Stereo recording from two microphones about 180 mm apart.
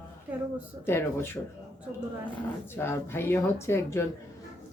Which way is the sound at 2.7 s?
15° left (ahead or behind).